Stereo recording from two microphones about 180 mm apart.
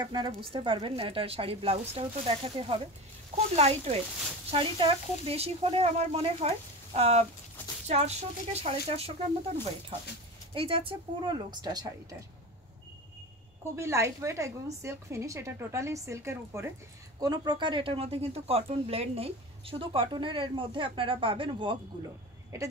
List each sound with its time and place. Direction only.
0.0 s a woman's voice: 25° right (ahead or behind)
13.7 s a woman's voice: 15° right (ahead or behind)